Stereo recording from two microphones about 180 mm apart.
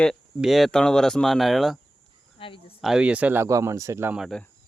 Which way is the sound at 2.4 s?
30° left (ahead or behind).